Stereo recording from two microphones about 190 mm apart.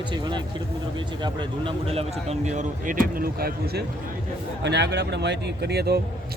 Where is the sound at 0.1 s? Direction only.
25° right (ahead or behind); by 6.0 s 60° right (ahead or behind).